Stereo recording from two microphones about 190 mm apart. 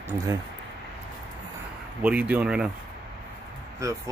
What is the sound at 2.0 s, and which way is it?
Speech, 10° right (ahead or behind).